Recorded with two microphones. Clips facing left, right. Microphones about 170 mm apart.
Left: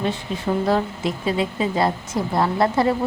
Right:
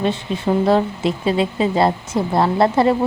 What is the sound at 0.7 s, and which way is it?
A woman's voice, 25° right (ahead or behind).